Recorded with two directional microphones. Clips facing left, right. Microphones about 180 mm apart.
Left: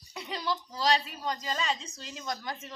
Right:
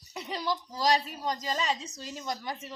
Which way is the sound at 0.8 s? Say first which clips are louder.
Right 1 dB; 40° right (ahead or behind).